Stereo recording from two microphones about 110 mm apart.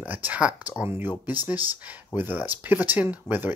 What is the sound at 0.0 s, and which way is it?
Speech, 15° right (ahead or behind).